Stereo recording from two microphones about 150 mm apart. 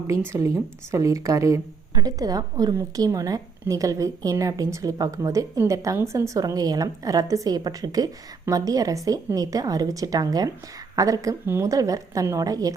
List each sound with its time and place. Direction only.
0.1 s a woman's voice: 20° right (ahead or behind)